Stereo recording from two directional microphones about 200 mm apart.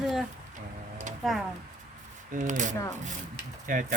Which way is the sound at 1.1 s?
40° right (ahead or behind).